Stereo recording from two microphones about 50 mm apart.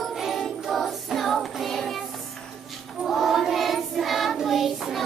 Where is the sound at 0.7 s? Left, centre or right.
Centre.